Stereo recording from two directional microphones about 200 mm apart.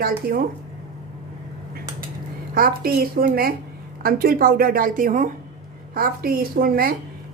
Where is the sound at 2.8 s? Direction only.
50° right (ahead or behind).